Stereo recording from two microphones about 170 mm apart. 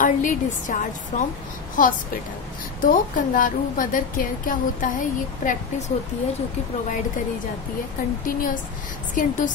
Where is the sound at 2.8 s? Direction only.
50° left (ahead or behind).